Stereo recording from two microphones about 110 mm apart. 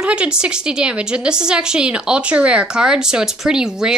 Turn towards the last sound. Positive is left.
turn(degrees=-5)  # may be behind; listen again after turning